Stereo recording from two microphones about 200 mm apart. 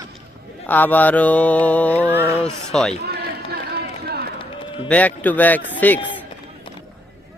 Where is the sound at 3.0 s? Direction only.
50° right (ahead or behind).